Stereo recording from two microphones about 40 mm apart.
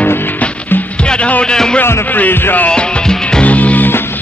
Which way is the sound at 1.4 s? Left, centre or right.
Left.